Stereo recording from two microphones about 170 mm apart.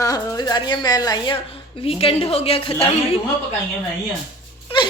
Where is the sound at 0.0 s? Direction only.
20° left (ahead or behind).